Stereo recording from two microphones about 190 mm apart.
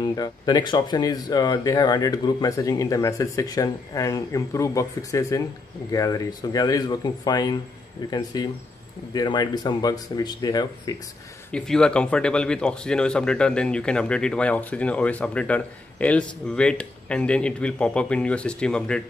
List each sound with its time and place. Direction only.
0.0 s speech: 20° left (ahead or behind)
11.5 s speech: 5° left (ahead or behind)